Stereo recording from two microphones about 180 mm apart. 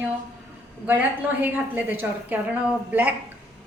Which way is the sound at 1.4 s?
10° right (ahead or behind).